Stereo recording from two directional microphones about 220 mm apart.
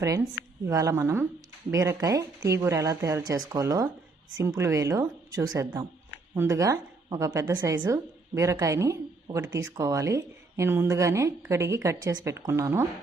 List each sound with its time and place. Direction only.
0.0 s a woman's voice: 15° right (ahead or behind)